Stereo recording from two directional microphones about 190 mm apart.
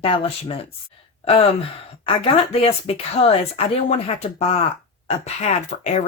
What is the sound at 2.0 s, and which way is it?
Speech, 30° left (ahead or behind).